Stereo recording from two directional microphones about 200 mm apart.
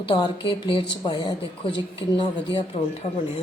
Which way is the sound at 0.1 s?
20° left (ahead or behind).